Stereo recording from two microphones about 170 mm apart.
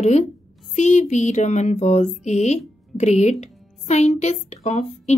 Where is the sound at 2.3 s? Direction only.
45° left (ahead or behind).